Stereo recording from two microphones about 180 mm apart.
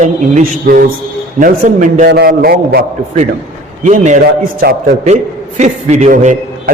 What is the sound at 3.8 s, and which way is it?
A man's voice, 40° right (ahead or behind).